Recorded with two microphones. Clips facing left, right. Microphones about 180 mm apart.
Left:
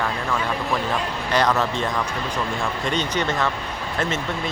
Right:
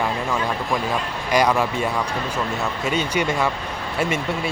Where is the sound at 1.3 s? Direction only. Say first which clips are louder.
Right 2 dB; 10° right (ahead or behind).